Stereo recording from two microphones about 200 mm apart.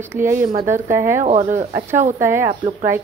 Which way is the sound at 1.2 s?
35° right (ahead or behind).